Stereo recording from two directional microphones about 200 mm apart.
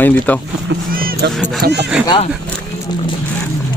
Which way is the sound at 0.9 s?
45° right (ahead or behind).